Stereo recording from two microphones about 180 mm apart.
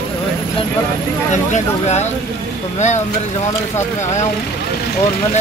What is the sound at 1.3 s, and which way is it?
Speech, 40° left (ahead or behind).